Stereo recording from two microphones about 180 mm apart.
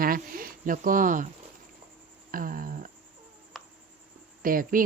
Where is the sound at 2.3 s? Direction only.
50° right (ahead or behind).